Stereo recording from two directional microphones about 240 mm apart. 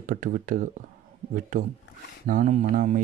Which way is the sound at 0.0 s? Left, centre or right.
Right.